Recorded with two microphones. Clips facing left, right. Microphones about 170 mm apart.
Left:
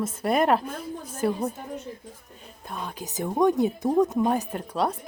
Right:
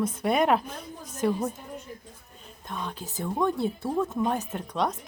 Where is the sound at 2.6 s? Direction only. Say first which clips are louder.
Even; 10° left (ahead or behind).